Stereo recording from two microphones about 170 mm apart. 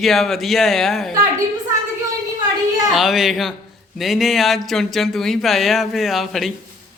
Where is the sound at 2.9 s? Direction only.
Centre (ahead or behind).